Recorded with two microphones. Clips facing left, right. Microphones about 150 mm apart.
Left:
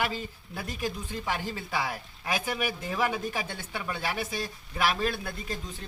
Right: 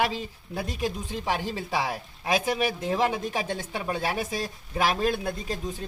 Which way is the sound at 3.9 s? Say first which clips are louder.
Right 3 dB; 40° right (ahead or behind).